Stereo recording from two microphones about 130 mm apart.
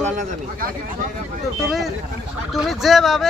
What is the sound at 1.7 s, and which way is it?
Speech, centre (ahead or behind).